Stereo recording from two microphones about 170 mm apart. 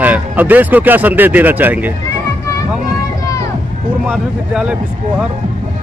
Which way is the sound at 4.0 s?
5° right (ahead or behind).